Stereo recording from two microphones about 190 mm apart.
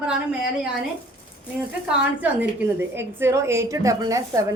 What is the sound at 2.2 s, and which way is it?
A woman's voice, 10° right (ahead or behind).